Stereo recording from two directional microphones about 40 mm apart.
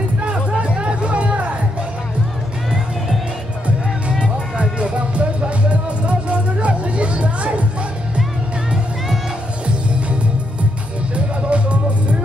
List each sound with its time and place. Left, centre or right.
0.2 s music: right
4.2 s music: right
11.5 s music: right